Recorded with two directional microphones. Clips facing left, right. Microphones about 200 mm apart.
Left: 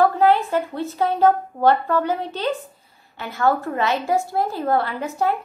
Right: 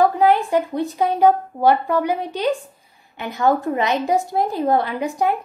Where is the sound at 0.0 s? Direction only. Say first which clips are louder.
Right 1 dB; 15° right (ahead or behind).